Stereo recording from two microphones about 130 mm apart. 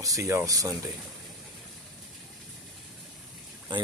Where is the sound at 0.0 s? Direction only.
25° right (ahead or behind).